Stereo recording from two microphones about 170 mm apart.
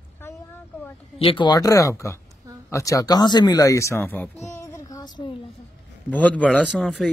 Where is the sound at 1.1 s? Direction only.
30° left (ahead or behind); by 4.3 s 10° left (ahead or behind).